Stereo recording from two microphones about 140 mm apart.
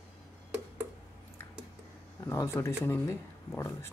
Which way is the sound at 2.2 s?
20° left (ahead or behind).